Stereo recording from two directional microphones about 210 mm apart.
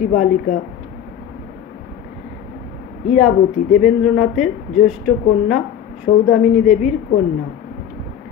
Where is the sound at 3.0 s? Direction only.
35° left (ahead or behind).